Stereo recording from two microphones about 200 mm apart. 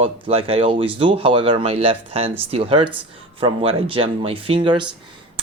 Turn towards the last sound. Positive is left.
turn(degrees=-25)  # may be behind; listen again after turning